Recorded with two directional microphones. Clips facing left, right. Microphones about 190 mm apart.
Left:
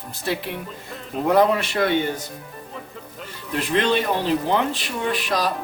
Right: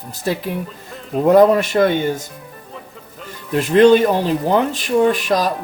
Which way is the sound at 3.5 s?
45° right (ahead or behind).